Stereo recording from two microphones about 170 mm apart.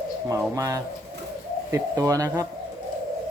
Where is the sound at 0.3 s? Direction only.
20° right (ahead or behind).